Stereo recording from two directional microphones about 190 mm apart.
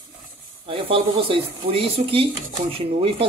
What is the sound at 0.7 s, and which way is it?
Speech, 30° right (ahead or behind).